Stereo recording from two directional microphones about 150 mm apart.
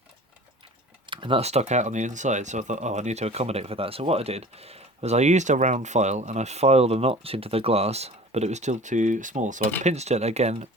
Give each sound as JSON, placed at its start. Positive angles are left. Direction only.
{"t": 1.0, "sound": "speech", "side_deg": -35}